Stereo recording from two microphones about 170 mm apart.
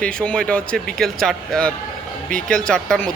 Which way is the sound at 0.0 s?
5° left (ahead or behind).